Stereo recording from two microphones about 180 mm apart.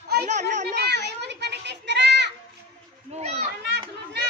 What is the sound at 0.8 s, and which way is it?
Children playing, 70° right (ahead or behind).